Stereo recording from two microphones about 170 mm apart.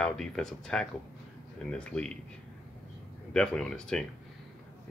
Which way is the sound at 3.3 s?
5° left (ahead or behind).